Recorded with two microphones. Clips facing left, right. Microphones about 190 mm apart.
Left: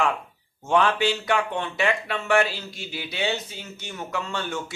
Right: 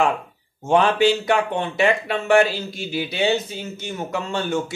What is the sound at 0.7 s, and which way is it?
Speech, 30° right (ahead or behind).